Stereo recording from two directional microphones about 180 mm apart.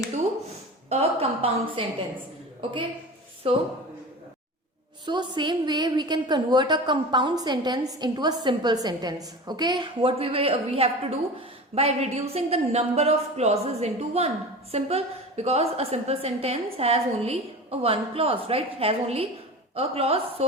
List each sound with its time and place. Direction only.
0.9 s a sound: 35° right (ahead or behind)
3.4 s a woman's voice: 30° right (ahead or behind)
5.0 s a woman's voice: 25° right (ahead or behind)